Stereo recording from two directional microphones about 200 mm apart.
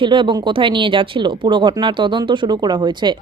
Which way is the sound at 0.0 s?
25° right (ahead or behind).